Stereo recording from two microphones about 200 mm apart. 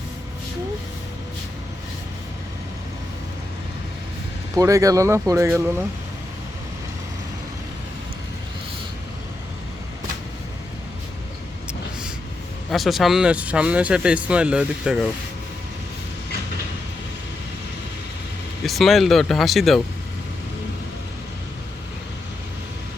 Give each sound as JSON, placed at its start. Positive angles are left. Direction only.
{"t": 4.5, "sound": "speech", "side_deg": -15}
{"t": 12.7, "sound": "speech", "side_deg": 0}
{"t": 18.6, "sound": "speech", "side_deg": 0}